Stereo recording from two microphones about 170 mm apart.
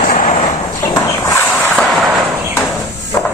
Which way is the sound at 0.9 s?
20° left (ahead or behind).